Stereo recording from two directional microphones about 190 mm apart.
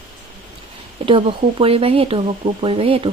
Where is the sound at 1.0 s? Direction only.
30° right (ahead or behind).